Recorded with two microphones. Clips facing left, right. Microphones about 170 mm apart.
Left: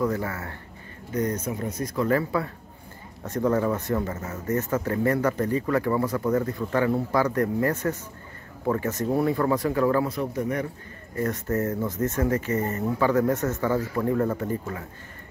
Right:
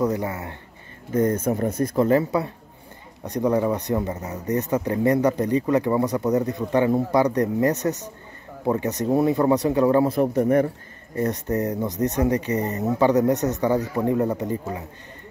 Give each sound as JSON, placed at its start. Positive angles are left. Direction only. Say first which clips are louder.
{"t": 0.0, "sound": "speech", "louder": "right 3 dB", "side_deg": -20}
{"t": 1.1, "sound": "speech", "louder": "right 6 dB", "side_deg": -50}
{"t": 2.0, "sound": "a man's voice", "louder": "right 4 dB", "side_deg": -20}
{"t": 10.1, "sound": "speech", "louder": "right 8 dB", "side_deg": -55}
{"t": 11.1, "sound": "a man's voice", "louder": "right 2 dB", "side_deg": -20}